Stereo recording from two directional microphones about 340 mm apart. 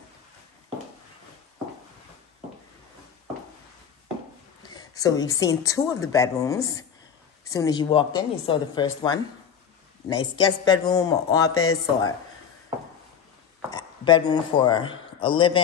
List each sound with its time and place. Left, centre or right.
4.6 s a woman's voice: centre
11.5 s speech: left
13.7 s a man's voice: centre